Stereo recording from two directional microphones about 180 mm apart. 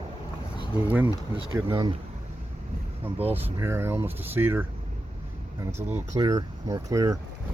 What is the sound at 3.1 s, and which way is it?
Speech, 10° right (ahead or behind).